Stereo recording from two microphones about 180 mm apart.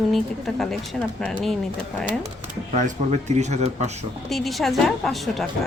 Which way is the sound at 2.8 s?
40° right (ahead or behind).